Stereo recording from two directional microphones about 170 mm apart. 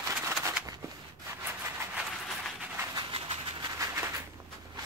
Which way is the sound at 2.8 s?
25° right (ahead or behind).